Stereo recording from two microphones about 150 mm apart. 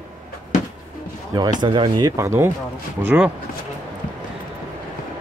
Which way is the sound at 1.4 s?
30° right (ahead or behind).